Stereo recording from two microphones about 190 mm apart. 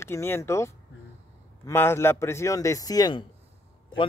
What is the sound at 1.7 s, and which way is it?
A man's voice, 15° left (ahead or behind).